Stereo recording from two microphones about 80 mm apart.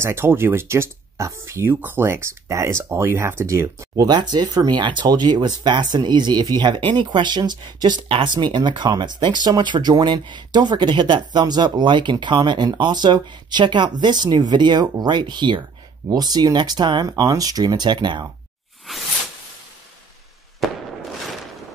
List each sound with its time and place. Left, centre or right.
0.0 s speech: right
4.0 s speech: right
16.1 s speech: right
17.2 s speech: right
20.6 s a sound: centre